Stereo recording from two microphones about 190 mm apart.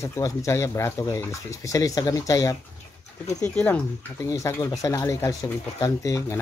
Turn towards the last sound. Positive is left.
turn(degrees=15)  # may be behind; listen again after turning